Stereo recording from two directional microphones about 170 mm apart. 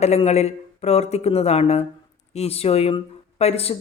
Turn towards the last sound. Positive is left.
turn(degrees=35)  # may be behind; listen again after turning